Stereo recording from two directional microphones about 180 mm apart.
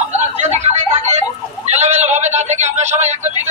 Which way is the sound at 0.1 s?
40° right (ahead or behind).